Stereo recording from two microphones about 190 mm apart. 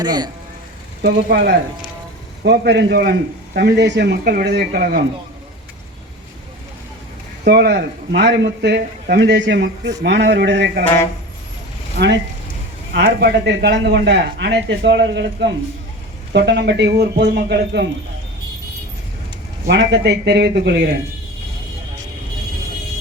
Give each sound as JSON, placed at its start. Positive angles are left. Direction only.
{"t": 0.0, "sound": "speech", "side_deg": -20}
{"t": 1.0, "sound": "a man's voice", "side_deg": -60}
{"t": 7.4, "sound": "a man's voice", "side_deg": -60}
{"t": 11.9, "sound": "a man's voice", "side_deg": -65}
{"t": 19.6, "sound": "a man's voice", "side_deg": -65}